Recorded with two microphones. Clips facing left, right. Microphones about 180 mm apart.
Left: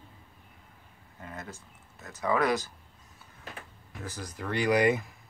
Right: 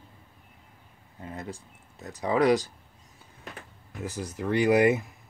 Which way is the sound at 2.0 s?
20° right (ahead or behind).